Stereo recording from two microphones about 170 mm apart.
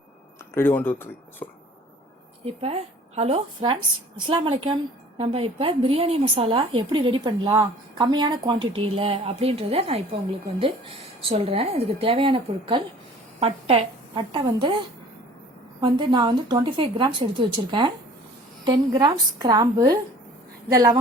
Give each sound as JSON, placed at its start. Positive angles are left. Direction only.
{"t": 0.5, "sound": "speech", "side_deg": 10}
{"t": 2.4, "sound": "a woman's voice", "side_deg": -35}
{"t": 15.8, "sound": "a woman's voice", "side_deg": -25}